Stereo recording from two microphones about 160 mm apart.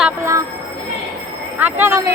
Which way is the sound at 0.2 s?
20° right (ahead or behind).